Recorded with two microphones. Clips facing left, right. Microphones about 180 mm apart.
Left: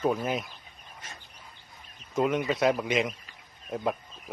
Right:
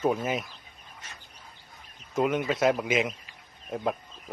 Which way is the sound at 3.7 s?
Centre (ahead or behind).